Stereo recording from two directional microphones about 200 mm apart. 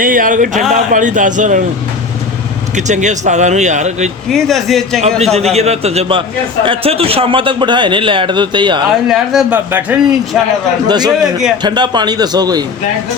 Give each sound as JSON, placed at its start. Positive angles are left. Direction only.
{"t": 0.0, "sound": "speech", "side_deg": -45}
{"t": 2.7, "sound": "speech", "side_deg": -35}
{"t": 4.3, "sound": "a man's voice", "side_deg": 0}
{"t": 5.2, "sound": "a man's voice", "side_deg": -30}
{"t": 9.0, "sound": "a man's voice", "side_deg": 0}
{"t": 10.8, "sound": "a man's voice", "side_deg": -20}
{"t": 11.2, "sound": "a man's voice", "side_deg": 0}
{"t": 11.6, "sound": "a man's voice", "side_deg": -20}